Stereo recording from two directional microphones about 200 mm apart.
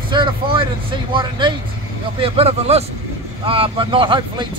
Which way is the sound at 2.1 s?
30° right (ahead or behind).